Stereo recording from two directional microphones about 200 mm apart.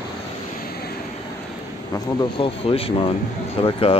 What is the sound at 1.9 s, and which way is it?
Speech, 25° left (ahead or behind).